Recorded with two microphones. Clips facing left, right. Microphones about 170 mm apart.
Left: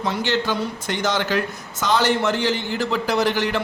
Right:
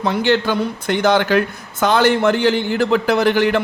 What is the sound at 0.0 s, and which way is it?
A man's voice, 60° right (ahead or behind).